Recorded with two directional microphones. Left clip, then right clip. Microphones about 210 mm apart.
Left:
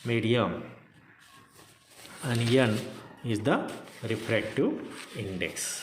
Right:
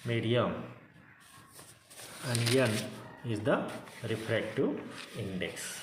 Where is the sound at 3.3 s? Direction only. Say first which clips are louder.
Left 3 dB; 45° left (ahead or behind).